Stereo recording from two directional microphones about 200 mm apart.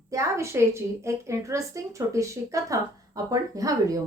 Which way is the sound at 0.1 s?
15° right (ahead or behind).